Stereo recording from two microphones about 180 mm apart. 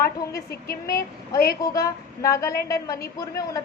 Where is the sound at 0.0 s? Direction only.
15° left (ahead or behind).